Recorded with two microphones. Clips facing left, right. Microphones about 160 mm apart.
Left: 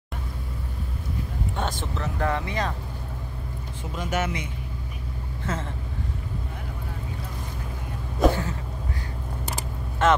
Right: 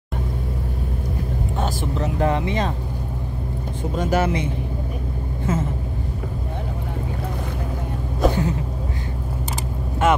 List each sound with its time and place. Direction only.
1.6 s vehicle: 5° right (ahead or behind)
2.0 s speech: 20° right (ahead or behind)
3.9 s speech: 35° right (ahead or behind)
5.5 s speech: 10° right (ahead or behind)
8.3 s a sound: 20° right (ahead or behind)
10.0 s speech: 10° right (ahead or behind)